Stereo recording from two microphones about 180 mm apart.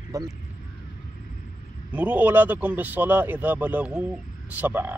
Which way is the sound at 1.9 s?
5° right (ahead or behind).